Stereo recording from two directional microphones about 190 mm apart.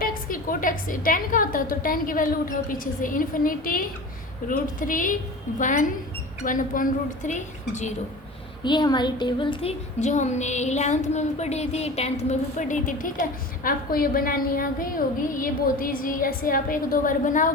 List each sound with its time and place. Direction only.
0.0 s a woman's voice: 50° left (ahead or behind)
8.6 s a woman's voice: 25° left (ahead or behind); by 17.5 s 45° left (ahead or behind)